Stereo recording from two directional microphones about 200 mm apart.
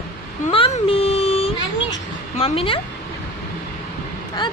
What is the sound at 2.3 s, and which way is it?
Speech, 30° left (ahead or behind).